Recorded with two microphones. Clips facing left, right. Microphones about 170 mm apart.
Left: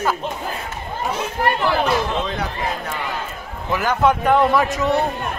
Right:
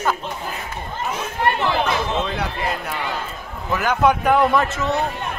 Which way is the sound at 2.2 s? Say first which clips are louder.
Even; 10° right (ahead or behind).